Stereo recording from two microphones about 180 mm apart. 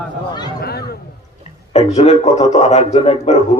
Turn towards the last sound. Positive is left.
turn(degrees=35)  # may be behind; listen again after turning